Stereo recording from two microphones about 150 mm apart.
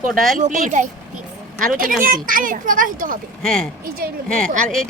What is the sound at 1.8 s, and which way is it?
Speech, 70° right (ahead or behind).